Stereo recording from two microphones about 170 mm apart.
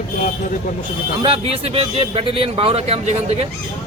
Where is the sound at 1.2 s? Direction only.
35° right (ahead or behind).